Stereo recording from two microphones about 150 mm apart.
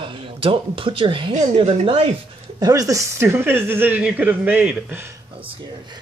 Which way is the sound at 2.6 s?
25° right (ahead or behind).